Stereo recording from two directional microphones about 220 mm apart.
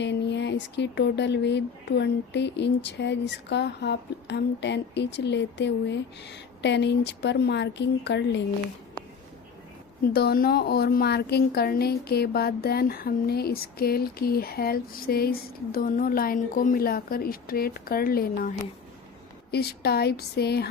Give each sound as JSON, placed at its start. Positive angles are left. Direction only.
{"t": 0.0, "sound": "a woman's voice", "side_deg": 50}
{"t": 10.1, "sound": "a woman's voice", "side_deg": 45}